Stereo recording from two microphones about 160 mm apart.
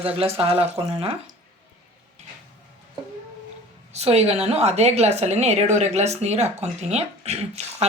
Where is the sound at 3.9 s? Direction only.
40° right (ahead or behind).